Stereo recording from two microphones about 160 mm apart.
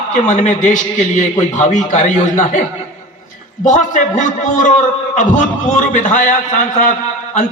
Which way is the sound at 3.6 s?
50° left (ahead or behind).